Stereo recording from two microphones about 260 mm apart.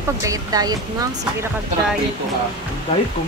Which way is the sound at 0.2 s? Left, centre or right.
Centre.